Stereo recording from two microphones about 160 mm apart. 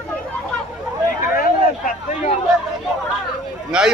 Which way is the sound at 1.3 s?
60° left (ahead or behind).